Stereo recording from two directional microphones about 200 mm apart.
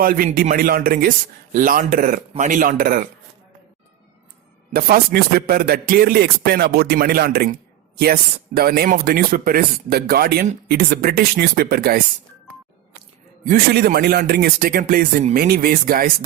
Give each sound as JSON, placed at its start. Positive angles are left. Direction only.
{"t": 0.0, "sound": "speech", "side_deg": -45}
{"t": 4.7, "sound": "speech", "side_deg": -45}
{"t": 13.4, "sound": "speech", "side_deg": -45}